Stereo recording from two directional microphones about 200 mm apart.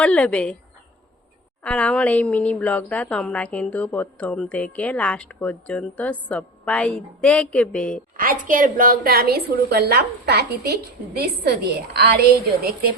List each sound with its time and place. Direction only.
0.0 s a woman's voice: 5° left (ahead or behind)
1.6 s a woman's voice: 5° left (ahead or behind)
8.1 s a woman's voice: 45° right (ahead or behind)